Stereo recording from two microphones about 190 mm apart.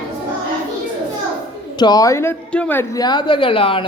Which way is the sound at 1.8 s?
20° left (ahead or behind).